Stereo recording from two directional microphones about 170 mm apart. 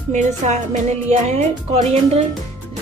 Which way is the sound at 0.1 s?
45° right (ahead or behind).